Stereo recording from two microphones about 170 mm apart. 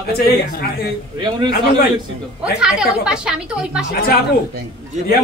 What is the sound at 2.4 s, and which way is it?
A woman's voice, 5° right (ahead or behind).